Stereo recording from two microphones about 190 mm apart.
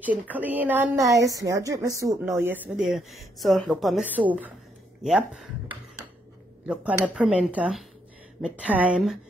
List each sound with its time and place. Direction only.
0.0 s a woman's voice: 10° right (ahead or behind)